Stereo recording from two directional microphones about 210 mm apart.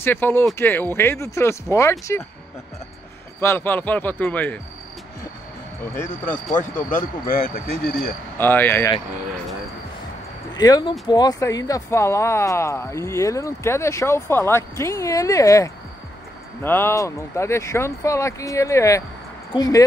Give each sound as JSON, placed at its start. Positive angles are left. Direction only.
{"t": 0.0, "sound": "speech", "side_deg": 10}
{"t": 3.3, "sound": "speech", "side_deg": 10}
{"t": 6.6, "sound": "speech", "side_deg": 35}
{"t": 8.4, "sound": "speech", "side_deg": 10}
{"t": 10.5, "sound": "speech", "side_deg": 20}